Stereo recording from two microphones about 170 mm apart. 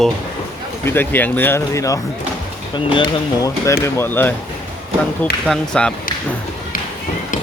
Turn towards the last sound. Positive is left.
turn(degrees=5)  # may be behind; listen again after turning